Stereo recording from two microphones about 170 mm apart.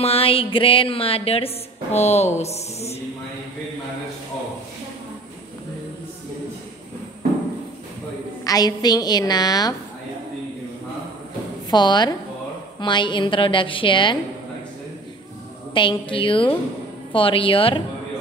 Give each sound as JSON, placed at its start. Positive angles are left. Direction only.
{"t": 0.0, "sound": "speech", "side_deg": 35}
{"t": 8.5, "sound": "a woman's voice", "side_deg": 20}
{"t": 11.7, "sound": "a woman's voice", "side_deg": 25}
{"t": 15.7, "sound": "a woman's voice", "side_deg": 30}